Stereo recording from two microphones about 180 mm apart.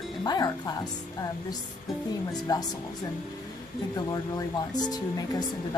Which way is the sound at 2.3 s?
20° left (ahead or behind).